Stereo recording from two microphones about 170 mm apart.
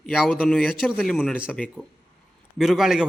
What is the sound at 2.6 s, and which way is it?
Speech, centre (ahead or behind).